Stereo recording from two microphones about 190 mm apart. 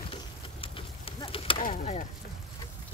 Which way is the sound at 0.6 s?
30° left (ahead or behind).